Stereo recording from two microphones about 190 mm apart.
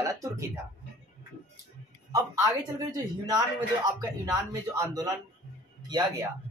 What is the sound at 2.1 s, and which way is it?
A woman's voice, 15° right (ahead or behind).